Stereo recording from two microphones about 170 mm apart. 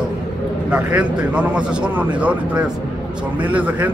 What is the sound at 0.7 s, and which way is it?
Speech, 5° right (ahead or behind).